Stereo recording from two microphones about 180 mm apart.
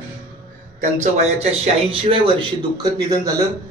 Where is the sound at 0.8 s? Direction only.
35° right (ahead or behind); by 3.4 s 20° right (ahead or behind).